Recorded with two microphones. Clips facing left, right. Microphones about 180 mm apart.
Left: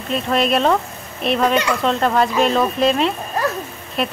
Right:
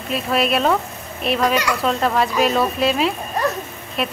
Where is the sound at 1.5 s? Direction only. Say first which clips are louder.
Left 2 dB; 25° left (ahead or behind).